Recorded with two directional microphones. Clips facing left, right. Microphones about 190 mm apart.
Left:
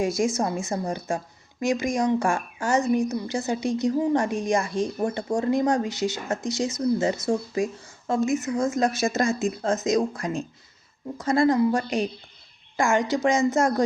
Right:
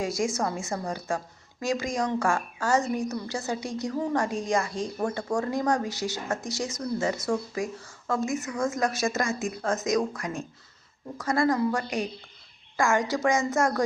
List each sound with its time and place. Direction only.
0.0 s a woman's voice: 20° left (ahead or behind)